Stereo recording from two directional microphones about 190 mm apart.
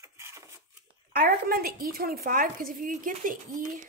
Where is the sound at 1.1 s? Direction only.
50° right (ahead or behind).